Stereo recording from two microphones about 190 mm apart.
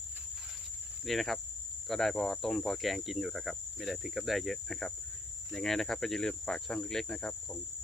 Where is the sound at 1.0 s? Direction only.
Centre (ahead or behind).